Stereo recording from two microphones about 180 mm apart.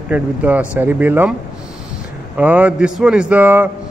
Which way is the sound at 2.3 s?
10° right (ahead or behind).